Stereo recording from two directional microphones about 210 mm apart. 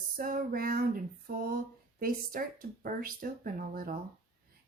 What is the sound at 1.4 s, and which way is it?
Speech, 45° right (ahead or behind).